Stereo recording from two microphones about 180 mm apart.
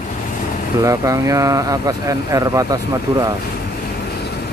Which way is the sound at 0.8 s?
15° right (ahead or behind).